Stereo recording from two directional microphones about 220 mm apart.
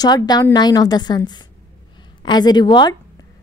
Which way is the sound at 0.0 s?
20° left (ahead or behind).